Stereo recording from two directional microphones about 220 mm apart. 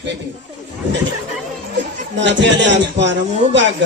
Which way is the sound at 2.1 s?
55° right (ahead or behind).